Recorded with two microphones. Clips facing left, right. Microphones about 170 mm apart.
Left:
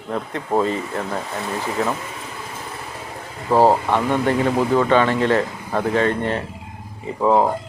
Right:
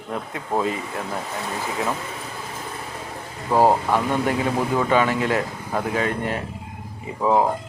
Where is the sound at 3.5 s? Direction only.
15° left (ahead or behind).